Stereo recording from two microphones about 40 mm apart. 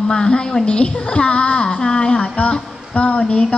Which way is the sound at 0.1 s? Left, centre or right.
Centre.